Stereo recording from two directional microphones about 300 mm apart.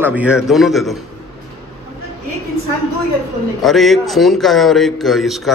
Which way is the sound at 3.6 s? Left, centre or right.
Centre.